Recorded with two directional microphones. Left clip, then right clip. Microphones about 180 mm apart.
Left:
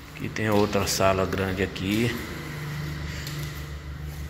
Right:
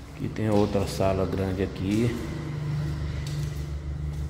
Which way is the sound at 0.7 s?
5° right (ahead or behind).